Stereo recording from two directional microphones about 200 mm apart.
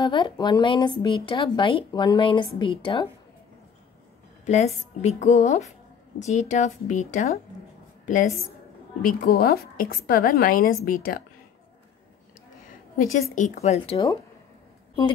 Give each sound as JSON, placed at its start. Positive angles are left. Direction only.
{"t": 0.0, "sound": "speech", "side_deg": 25}
{"t": 4.5, "sound": "a woman's voice", "side_deg": 35}
{"t": 8.0, "sound": "a sound", "side_deg": 40}
{"t": 9.0, "sound": "a woman's voice", "side_deg": 45}
{"t": 13.3, "sound": "a woman's voice", "side_deg": 35}